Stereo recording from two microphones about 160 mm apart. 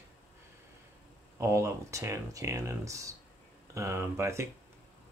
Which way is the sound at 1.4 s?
20° right (ahead or behind).